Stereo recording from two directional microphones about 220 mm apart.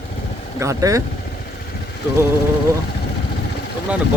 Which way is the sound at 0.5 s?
15° right (ahead or behind).